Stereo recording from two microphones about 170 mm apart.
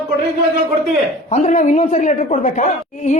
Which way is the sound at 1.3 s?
45° left (ahead or behind).